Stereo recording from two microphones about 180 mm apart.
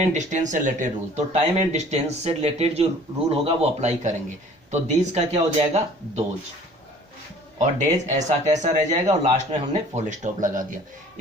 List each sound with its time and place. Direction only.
0.0 s speech: 40° right (ahead or behind)
7.6 s speech: 40° right (ahead or behind)